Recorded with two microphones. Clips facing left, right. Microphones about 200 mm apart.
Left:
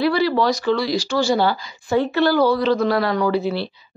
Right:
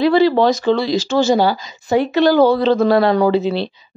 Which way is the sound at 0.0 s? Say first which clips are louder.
Right 5 dB; 20° right (ahead or behind).